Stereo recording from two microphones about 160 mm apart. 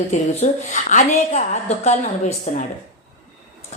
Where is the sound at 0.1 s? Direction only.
45° left (ahead or behind).